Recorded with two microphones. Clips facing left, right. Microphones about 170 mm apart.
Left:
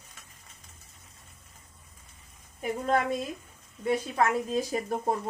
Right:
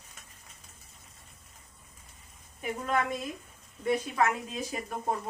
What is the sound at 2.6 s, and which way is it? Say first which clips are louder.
A woman's voice: left 3 dB; 35° left (ahead or behind).